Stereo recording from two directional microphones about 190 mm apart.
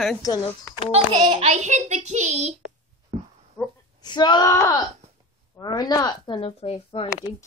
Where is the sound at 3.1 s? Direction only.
35° right (ahead or behind).